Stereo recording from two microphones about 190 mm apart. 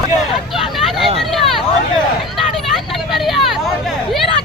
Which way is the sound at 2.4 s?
Centre (ahead or behind).